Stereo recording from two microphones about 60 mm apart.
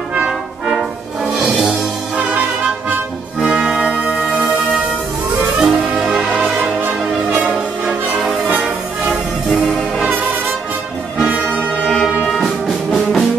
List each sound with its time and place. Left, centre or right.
1.4 s music: centre
3.4 s music: centre
6.8 s music: right
7.5 s music: centre
9.5 s brass instrument: centre
11.1 s music: right
11.8 s brass instrument: centre
12.3 s music: centre